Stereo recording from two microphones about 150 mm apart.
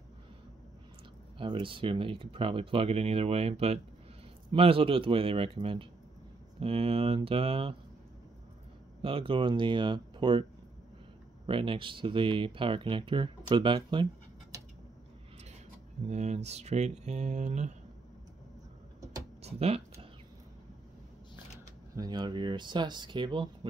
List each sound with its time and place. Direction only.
1.4 s speech: 35° right (ahead or behind)
9.0 s speech: 35° right (ahead or behind)
11.4 s speech: 35° right (ahead or behind)
14.5 s a sound: 25° right (ahead or behind)
16.1 s speech: 50° right (ahead or behind)
19.4 s a sound: 40° right (ahead or behind)
21.9 s speech: 25° right (ahead or behind)